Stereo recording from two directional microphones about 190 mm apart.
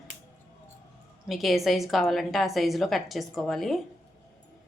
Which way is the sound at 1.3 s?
Centre (ahead or behind).